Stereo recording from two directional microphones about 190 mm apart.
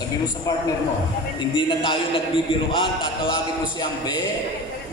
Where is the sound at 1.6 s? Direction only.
25° left (ahead or behind).